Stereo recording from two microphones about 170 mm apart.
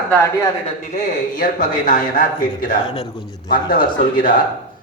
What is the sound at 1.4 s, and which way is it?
Speech, 55° left (ahead or behind).